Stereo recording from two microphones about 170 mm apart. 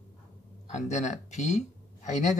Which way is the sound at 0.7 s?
45° left (ahead or behind).